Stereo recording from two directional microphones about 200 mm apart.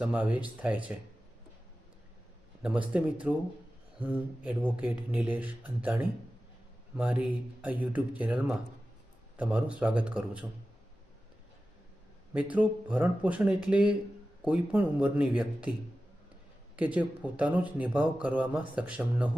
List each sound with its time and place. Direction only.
0.0 s speech: 5° right (ahead or behind)
2.6 s a man's voice: 5° right (ahead or behind)
12.3 s speech: 5° right (ahead or behind)
16.7 s speech: 5° right (ahead or behind)